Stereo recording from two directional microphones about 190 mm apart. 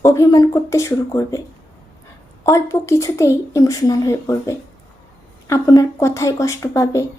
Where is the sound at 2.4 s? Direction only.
15° left (ahead or behind).